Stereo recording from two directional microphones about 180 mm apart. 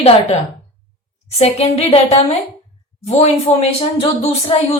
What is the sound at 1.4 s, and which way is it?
Speech, 35° left (ahead or behind).